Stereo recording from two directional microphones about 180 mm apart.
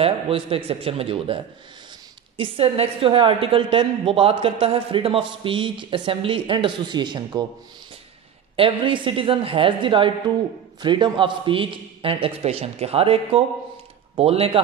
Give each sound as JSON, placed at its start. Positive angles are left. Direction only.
{"t": 0.0, "sound": "a man's voice", "side_deg": -30}
{"t": 8.5, "sound": "a woman's voice", "side_deg": -30}